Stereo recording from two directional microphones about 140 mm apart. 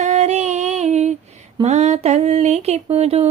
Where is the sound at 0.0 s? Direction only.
55° right (ahead or behind).